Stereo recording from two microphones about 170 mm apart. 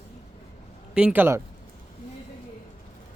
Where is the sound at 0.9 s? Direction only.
10° right (ahead or behind).